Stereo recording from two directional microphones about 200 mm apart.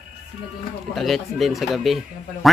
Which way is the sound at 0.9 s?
Centre (ahead or behind).